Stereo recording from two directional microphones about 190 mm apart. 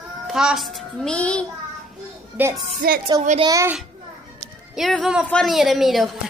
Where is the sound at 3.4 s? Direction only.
15° right (ahead or behind).